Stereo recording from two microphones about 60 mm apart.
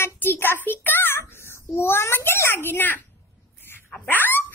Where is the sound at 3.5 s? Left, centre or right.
Left.